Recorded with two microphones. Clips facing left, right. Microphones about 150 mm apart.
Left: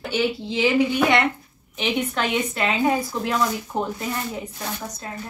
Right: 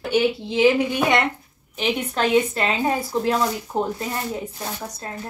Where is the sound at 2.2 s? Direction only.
30° right (ahead or behind).